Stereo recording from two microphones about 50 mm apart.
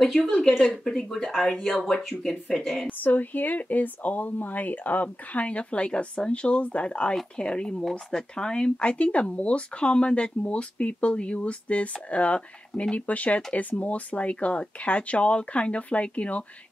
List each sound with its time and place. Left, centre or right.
0.0 s speech: centre
2.9 s speech: left